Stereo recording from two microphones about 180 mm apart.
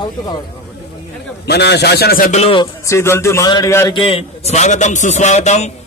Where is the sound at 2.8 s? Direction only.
15° left (ahead or behind).